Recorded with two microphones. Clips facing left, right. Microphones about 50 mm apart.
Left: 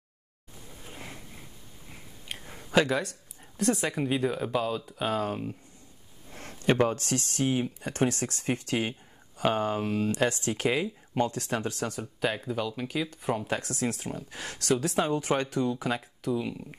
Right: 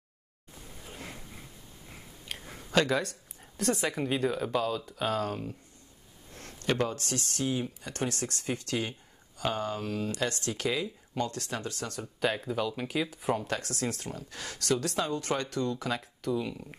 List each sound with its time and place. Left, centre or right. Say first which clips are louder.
0.8 s a sound: even; centre
2.2 s speech: left 1 dB; centre; by 11.9 s left
11.9 s speech: even; centre
13.4 s speech: left 2 dB; centre
15.0 s speech: left 4 dB; left
16.0 s speech: left 1 dB; centre